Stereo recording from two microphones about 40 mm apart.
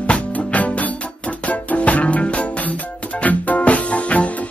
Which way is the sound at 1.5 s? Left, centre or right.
Left.